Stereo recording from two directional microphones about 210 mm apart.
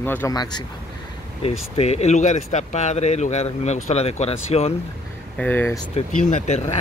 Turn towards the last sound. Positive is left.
turn(degrees=30)  # may be behind; listen again after turning